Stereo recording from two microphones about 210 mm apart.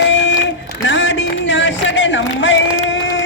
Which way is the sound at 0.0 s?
60° left (ahead or behind).